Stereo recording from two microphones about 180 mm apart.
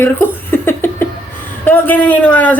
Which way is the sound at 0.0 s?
10° left (ahead or behind).